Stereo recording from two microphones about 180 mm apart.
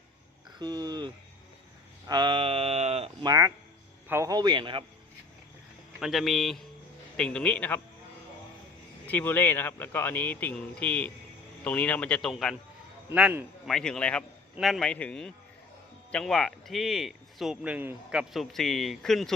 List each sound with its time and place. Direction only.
0.6 s a man's voice: 20° right (ahead or behind)
2.0 s a sound: 25° right (ahead or behind)
3.2 s a man's voice: 20° right (ahead or behind)
6.0 s speech: centre (ahead or behind)
9.0 s speech: 10° left (ahead or behind)
13.1 s speech: 10° right (ahead or behind)